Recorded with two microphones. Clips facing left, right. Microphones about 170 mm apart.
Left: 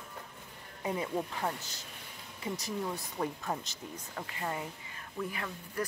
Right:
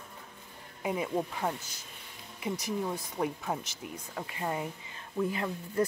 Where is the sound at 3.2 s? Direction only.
5° right (ahead or behind); by 5.8 s 25° right (ahead or behind).